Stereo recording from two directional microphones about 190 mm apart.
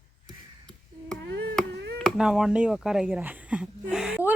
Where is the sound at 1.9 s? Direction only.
Centre (ahead or behind).